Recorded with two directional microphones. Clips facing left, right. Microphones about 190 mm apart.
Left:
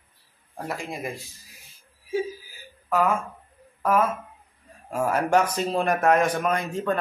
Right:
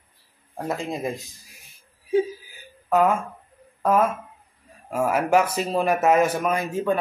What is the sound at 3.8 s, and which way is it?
Speech, 20° right (ahead or behind).